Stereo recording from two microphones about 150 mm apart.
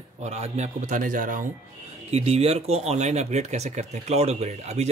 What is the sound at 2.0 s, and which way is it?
Speech, 45° right (ahead or behind).